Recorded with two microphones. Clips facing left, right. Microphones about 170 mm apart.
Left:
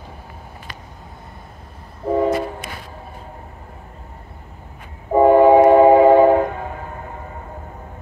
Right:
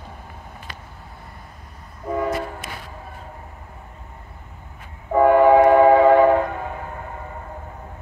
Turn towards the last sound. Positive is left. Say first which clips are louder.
# left 3 dB
turn(degrees=20)  # may be behind; listen again after turning